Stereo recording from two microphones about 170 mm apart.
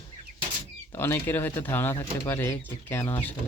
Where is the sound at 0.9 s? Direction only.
15° left (ahead or behind).